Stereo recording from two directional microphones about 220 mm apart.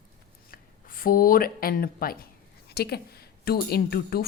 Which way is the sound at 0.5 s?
40° left (ahead or behind).